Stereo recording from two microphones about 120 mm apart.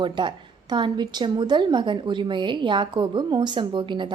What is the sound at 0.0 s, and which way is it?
A woman's voice, 40° right (ahead or behind).